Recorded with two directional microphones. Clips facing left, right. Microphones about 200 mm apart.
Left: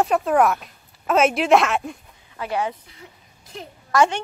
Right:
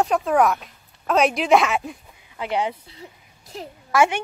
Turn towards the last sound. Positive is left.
turn(degrees=-10)  # may be behind; listen again after turning